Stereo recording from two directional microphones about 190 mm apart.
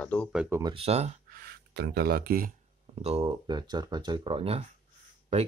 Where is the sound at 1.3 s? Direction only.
55° right (ahead or behind).